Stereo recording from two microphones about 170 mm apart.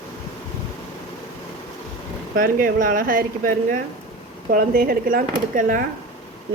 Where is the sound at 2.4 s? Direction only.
55° right (ahead or behind).